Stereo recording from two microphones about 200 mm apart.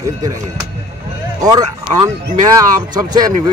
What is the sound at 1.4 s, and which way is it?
Speech, 20° right (ahead or behind).